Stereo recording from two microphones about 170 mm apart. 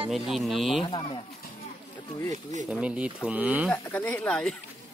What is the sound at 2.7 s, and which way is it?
Speech, 10° right (ahead or behind).